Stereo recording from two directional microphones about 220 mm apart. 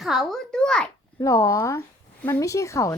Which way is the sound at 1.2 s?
15° left (ahead or behind).